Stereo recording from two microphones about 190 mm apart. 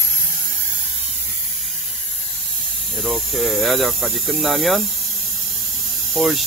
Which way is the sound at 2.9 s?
Centre (ahead or behind).